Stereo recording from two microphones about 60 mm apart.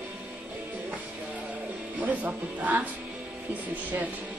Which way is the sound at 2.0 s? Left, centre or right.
Right.